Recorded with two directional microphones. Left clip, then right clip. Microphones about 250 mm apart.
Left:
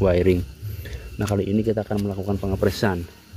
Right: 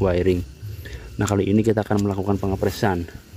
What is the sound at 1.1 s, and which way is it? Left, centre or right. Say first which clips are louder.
Speech: right 3 dB; centre.